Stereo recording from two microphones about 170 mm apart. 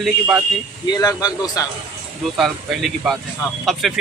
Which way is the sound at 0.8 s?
20° left (ahead or behind).